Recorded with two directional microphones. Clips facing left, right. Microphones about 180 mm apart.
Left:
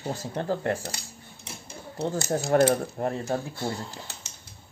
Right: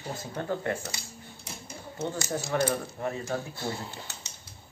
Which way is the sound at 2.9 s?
35° left (ahead or behind).